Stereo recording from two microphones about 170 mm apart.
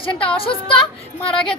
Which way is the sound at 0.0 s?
30° left (ahead or behind).